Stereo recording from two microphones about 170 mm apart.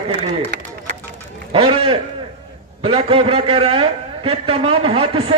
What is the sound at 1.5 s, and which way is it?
A man's voice, 30° right (ahead or behind).